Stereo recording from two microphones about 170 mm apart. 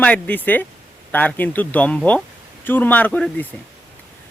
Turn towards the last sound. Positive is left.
turn(degrees=10)  # may be behind; listen again after turning